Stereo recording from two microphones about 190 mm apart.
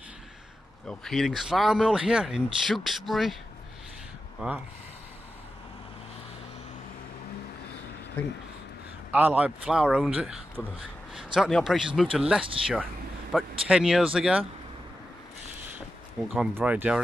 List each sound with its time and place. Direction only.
0.8 s speech: centre (ahead or behind)
4.4 s speech: 5° right (ahead or behind)
9.1 s speech: 5° right (ahead or behind)
16.3 s speech: 10° right (ahead or behind)